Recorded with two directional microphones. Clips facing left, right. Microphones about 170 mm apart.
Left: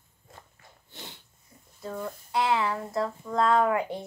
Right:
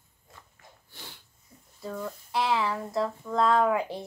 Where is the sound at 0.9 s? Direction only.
20° left (ahead or behind).